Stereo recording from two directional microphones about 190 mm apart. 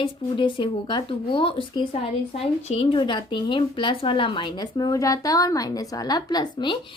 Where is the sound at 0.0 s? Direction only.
25° left (ahead or behind).